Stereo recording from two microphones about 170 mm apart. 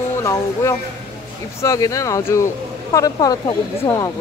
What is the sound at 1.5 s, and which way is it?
Speech, 20° left (ahead or behind).